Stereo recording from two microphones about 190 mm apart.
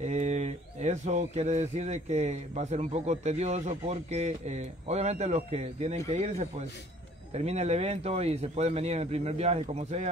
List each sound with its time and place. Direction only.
0.0 s speech: 35° right (ahead or behind)